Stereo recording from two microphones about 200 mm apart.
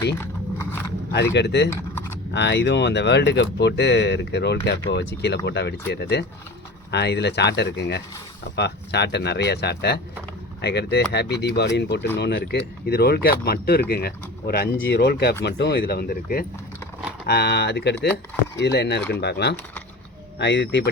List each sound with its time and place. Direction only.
0.2 s biting: 10° left (ahead or behind)
1.1 s speech: 60° left (ahead or behind)
1.7 s a sound: 10° left (ahead or behind)
2.3 s speech: 60° left (ahead or behind)